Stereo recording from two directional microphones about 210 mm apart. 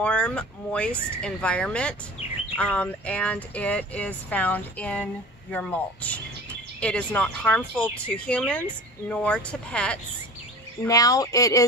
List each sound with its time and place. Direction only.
0.0 s speech: 5° left (ahead or behind)
10.8 s speech: 15° left (ahead or behind)